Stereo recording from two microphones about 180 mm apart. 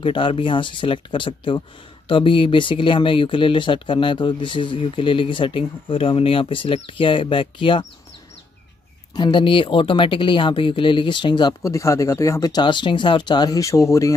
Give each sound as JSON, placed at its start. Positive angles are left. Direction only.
{"t": 0.0, "sound": "speech", "side_deg": 30}
{"t": 9.1, "sound": "speech", "side_deg": 25}